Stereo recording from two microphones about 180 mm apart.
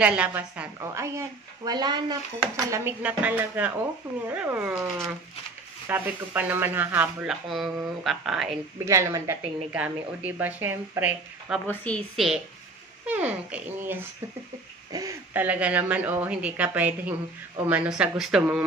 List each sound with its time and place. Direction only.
0.0 s a woman's voice: 5° right (ahead or behind); by 2.1 s 25° right (ahead or behind)
2.7 s a woman's voice: 10° right (ahead or behind)
5.9 s a woman's voice: 10° right (ahead or behind)
8.8 s a woman's voice: 15° right (ahead or behind)
11.6 s a woman's voice: 10° left (ahead or behind)
13.0 s a woman's voice: 10° right (ahead or behind)